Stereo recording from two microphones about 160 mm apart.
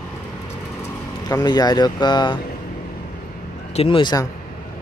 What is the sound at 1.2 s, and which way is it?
Speech, 25° left (ahead or behind).